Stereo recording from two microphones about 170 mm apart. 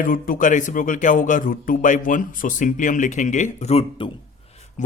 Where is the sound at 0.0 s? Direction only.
55° left (ahead or behind).